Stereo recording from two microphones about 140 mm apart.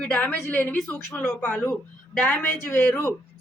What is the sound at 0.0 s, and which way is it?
Speech, 10° left (ahead or behind).